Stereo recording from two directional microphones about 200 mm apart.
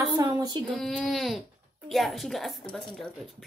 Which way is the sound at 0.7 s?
5° left (ahead or behind).